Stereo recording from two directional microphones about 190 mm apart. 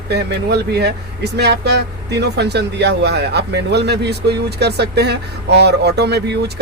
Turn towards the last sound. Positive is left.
turn(degrees=-60)  # may be behind; listen again after turning